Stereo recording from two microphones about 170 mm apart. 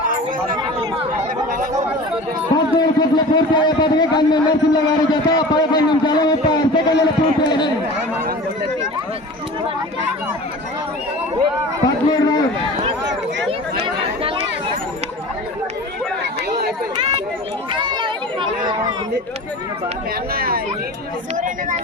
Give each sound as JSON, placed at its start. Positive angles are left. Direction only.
{"t": 2.7, "sound": "a man's voice", "side_deg": 25}
{"t": 12.0, "sound": "run", "side_deg": 25}
{"t": 13.8, "sound": "chatter", "side_deg": -30}
{"t": 17.7, "sound": "chatter", "side_deg": -25}
{"t": 20.3, "sound": "speech", "side_deg": -60}
{"t": 21.3, "sound": "speech", "side_deg": -50}